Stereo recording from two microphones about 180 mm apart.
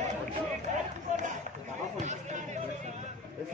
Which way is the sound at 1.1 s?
40° right (ahead or behind).